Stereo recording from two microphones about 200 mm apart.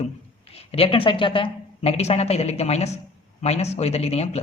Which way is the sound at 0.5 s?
30° left (ahead or behind).